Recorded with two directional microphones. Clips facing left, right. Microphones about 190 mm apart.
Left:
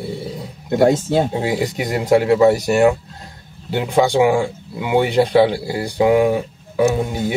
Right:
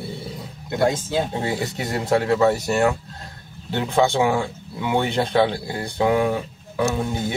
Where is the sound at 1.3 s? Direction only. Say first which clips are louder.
Left 5 dB; 10° left (ahead or behind).